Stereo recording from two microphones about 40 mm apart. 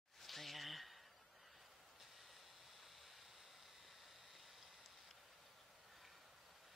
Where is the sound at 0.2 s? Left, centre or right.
Centre.